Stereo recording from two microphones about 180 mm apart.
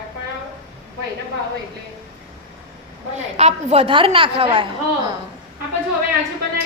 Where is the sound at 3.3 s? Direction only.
35° right (ahead or behind).